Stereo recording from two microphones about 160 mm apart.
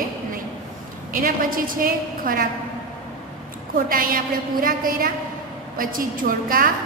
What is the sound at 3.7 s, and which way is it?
A woman's voice, 60° right (ahead or behind).